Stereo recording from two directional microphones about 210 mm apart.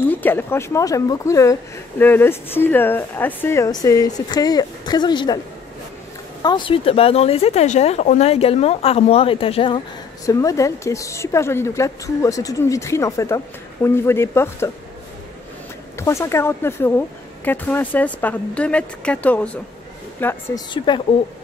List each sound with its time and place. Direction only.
0.1 s speech: 10° left (ahead or behind)
6.4 s speech: 20° left (ahead or behind)
10.2 s speech: 15° left (ahead or behind)
16.0 s speech: 15° left (ahead or behind)
20.7 s speech: 20° left (ahead or behind)